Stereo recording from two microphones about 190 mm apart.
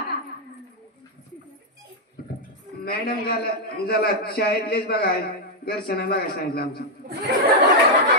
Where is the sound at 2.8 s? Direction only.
55° left (ahead or behind).